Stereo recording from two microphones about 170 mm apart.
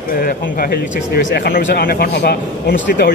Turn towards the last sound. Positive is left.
turn(degrees=70)  # may be behind; listen again after turning